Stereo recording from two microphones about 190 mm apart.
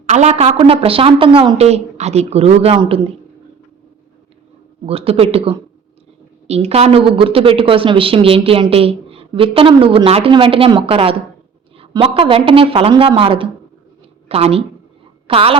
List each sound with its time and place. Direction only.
0.0 s a woman's voice: 35° right (ahead or behind)
4.9 s a woman's voice: 30° right (ahead or behind)